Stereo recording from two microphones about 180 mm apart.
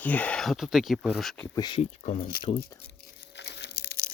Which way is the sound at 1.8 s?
40° left (ahead or behind).